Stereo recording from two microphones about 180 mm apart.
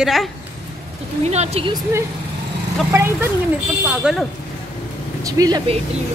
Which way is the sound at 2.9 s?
15° right (ahead or behind).